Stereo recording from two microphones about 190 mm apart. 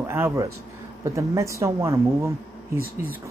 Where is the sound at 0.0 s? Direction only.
15° right (ahead or behind).